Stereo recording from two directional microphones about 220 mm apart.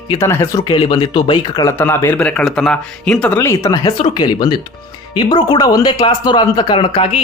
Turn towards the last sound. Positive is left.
turn(degrees=25)  # may be behind; listen again after turning